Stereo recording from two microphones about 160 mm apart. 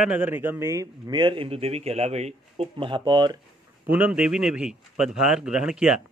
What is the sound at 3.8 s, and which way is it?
Speech, 10° right (ahead or behind).